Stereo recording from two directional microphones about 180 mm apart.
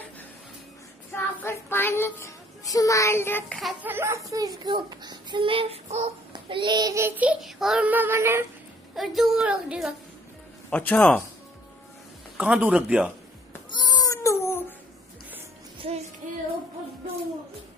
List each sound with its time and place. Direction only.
1.1 s speech: 15° left (ahead or behind)
3.8 s a child's voice: 10° right (ahead or behind); by 6.1 s 35° right (ahead or behind)
6.3 s child singing: 25° right (ahead or behind)
8.9 s a woman's voice: centre (ahead or behind)
10.7 s a man's voice: 10° left (ahead or behind)
12.4 s a woman's voice: 5° right (ahead or behind)
13.7 s cat: 25° left (ahead or behind)
15.8 s child singing: 30° right (ahead or behind)
16.2 s music: 45° right (ahead or behind)